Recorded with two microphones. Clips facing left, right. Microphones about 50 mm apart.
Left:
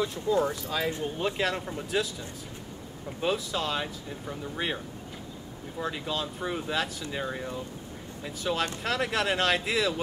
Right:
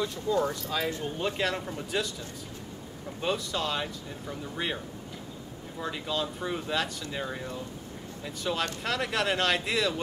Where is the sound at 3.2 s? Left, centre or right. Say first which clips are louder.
Left 1 dB; centre.